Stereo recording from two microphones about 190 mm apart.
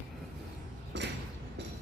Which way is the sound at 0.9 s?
65° right (ahead or behind).